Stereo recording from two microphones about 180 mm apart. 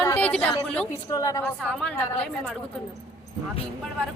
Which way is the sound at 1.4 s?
5° left (ahead or behind).